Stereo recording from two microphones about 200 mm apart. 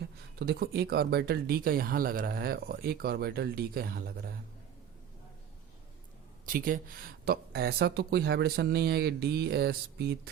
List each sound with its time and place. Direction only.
0.0 s speech: 55° right (ahead or behind)
6.4 s speech: 45° right (ahead or behind)